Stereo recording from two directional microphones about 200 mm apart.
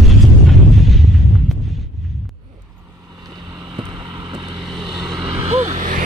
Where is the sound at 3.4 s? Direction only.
25° right (ahead or behind).